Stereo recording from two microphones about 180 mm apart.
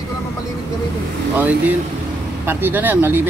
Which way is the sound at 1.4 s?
10° right (ahead or behind).